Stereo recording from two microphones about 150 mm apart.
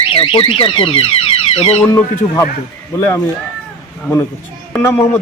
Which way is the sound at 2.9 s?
20° left (ahead or behind).